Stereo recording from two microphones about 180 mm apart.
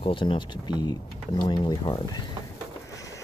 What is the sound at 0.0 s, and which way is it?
Speech, 30° left (ahead or behind).